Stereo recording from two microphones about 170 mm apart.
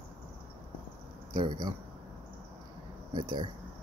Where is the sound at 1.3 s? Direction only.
25° right (ahead or behind).